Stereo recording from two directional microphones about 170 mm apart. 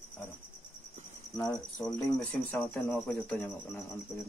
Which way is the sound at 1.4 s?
10° left (ahead or behind).